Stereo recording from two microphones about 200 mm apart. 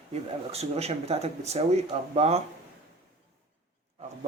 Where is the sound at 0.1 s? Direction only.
30° right (ahead or behind).